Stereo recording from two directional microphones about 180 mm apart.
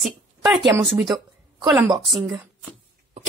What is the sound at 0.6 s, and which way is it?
Speech, 15° right (ahead or behind).